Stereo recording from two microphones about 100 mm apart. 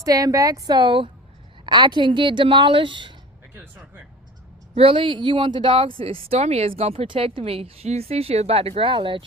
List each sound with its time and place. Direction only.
0.0 s a woman's voice: 35° right (ahead or behind); by 3.2 s 55° right (ahead or behind)
3.5 s speech: 20° right (ahead or behind)
4.7 s speech: 65° right (ahead or behind)